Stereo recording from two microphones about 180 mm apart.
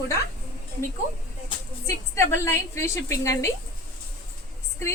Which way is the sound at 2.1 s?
15° left (ahead or behind).